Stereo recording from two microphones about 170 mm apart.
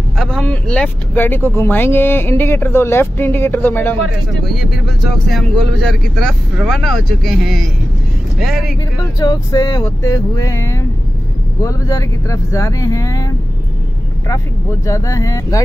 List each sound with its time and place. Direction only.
0.2 s speech: 5° left (ahead or behind)
4.5 s speech: centre (ahead or behind)
9.2 s speech: 25° left (ahead or behind)